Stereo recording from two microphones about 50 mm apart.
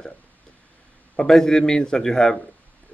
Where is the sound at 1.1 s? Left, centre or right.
Centre.